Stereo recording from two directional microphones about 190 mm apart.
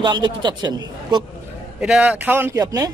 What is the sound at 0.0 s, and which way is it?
A man's voice, 25° right (ahead or behind).